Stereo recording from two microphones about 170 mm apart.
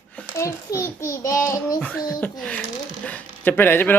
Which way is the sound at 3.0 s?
10° left (ahead or behind).